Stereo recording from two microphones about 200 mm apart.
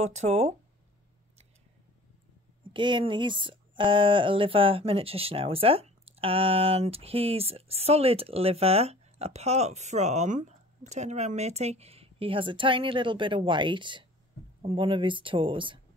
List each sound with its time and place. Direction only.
0.0 s speech: 35° right (ahead or behind)
2.7 s speech: 25° right (ahead or behind)